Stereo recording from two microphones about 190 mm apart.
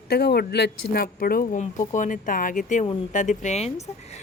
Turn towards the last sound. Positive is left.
turn(degrees=35)  # may be behind; listen again after turning